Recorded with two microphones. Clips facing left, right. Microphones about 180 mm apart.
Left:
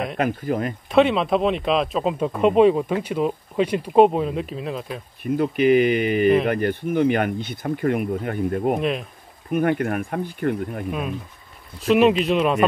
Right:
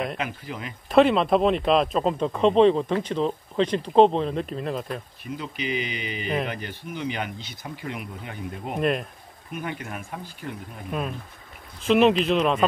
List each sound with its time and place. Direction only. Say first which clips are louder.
0.2 s speech: left 10 dB; 50° left (ahead or behind)
0.8 s speech: even; centre (ahead or behind)
5.2 s speech: left 17 dB; 55° left (ahead or behind)
10.9 s speech: left 3 dB; 5° left (ahead or behind)